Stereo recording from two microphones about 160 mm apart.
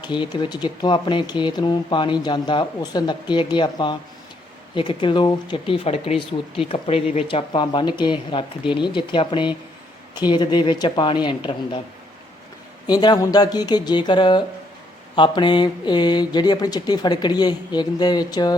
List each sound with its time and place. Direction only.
0.0 s speech: 30° left (ahead or behind)
12.9 s speech: 25° left (ahead or behind)